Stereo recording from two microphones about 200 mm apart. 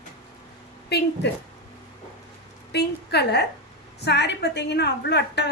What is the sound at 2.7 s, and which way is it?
A woman's voice, 55° left (ahead or behind).